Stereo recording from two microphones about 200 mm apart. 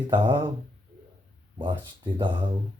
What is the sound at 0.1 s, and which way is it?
Speech, 25° right (ahead or behind).